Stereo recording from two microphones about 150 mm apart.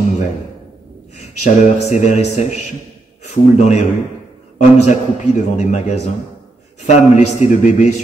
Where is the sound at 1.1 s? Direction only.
50° left (ahead or behind).